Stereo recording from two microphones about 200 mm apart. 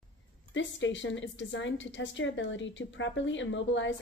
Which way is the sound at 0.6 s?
70° left (ahead or behind).